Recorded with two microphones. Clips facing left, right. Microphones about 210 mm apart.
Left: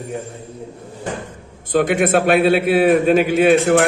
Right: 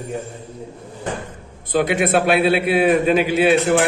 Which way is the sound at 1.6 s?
50° left (ahead or behind).